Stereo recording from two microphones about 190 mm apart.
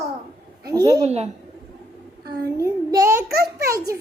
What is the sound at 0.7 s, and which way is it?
Speech, 20° right (ahead or behind).